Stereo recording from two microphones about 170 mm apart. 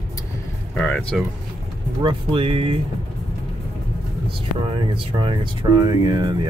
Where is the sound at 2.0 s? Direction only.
30° right (ahead or behind).